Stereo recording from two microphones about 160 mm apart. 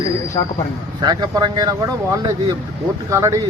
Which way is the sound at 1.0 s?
25° right (ahead or behind).